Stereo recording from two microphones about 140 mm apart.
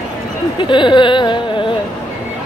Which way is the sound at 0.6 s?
35° left (ahead or behind).